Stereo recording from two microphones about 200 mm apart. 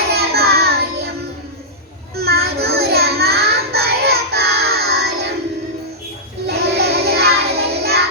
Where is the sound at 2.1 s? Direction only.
55° right (ahead or behind).